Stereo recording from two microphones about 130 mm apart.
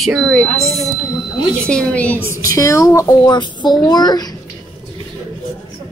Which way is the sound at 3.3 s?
35° left (ahead or behind).